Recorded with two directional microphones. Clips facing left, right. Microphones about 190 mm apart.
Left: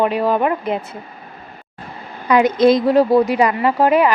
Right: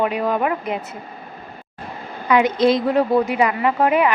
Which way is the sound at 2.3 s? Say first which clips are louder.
Left 3 dB; 40° left (ahead or behind).